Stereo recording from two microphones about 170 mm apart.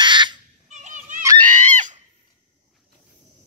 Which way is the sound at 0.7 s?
45° right (ahead or behind).